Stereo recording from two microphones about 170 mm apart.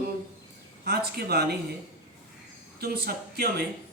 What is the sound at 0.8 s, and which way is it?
Speech, 70° right (ahead or behind).